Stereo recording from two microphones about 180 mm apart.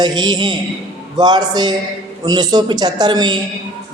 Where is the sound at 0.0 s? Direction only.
25° right (ahead or behind).